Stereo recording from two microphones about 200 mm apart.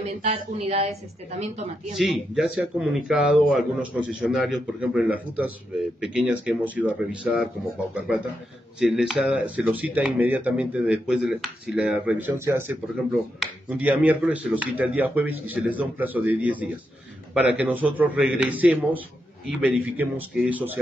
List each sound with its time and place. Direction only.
0.2 s speech: 35° right (ahead or behind)
2.0 s speech: centre (ahead or behind)
8.7 s speech: 5° right (ahead or behind)